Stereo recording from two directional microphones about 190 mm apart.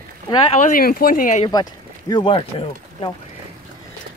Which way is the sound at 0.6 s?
45° left (ahead or behind).